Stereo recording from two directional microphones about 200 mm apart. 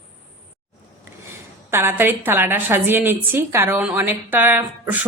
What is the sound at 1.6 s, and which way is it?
A woman's voice, 10° right (ahead or behind).